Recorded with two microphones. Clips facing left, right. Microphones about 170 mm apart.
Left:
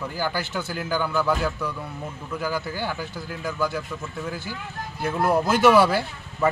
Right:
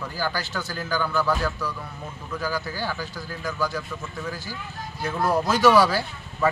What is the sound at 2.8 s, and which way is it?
Speech, 20° left (ahead or behind).